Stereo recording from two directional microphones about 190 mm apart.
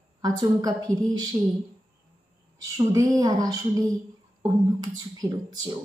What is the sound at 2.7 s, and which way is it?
A woman's voice, 20° right (ahead or behind).